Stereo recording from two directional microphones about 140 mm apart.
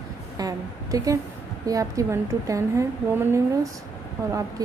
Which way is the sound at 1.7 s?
25° right (ahead or behind).